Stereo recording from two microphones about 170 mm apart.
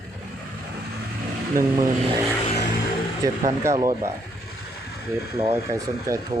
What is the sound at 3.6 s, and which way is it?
Speech, 20° right (ahead or behind).